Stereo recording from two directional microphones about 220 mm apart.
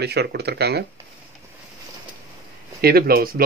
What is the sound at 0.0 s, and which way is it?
Speech, 50° right (ahead or behind).